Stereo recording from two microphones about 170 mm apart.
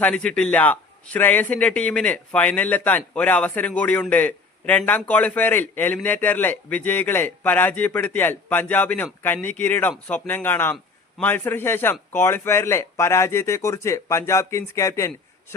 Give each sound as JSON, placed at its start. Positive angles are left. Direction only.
{"t": 0.0, "sound": "a man's voice", "side_deg": 5}